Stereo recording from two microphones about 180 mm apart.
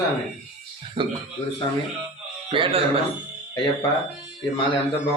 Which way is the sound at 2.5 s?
30° right (ahead or behind).